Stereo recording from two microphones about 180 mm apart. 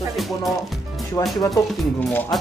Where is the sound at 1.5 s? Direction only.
5° left (ahead or behind).